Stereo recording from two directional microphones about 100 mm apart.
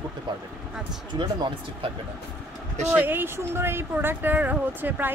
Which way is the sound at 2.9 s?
20° right (ahead or behind).